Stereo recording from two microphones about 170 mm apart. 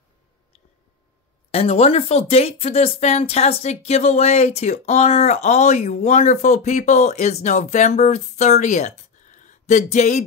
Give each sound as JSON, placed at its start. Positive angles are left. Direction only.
{"t": 1.5, "sound": "speech", "side_deg": 35}